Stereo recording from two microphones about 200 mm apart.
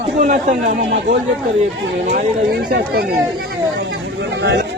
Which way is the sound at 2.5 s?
55° right (ahead or behind).